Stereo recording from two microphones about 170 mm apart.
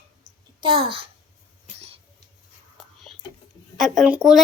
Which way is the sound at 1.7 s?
35° right (ahead or behind).